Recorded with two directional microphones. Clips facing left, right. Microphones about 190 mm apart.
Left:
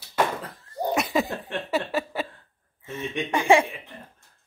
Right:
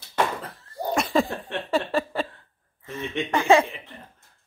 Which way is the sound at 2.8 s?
30° left (ahead or behind).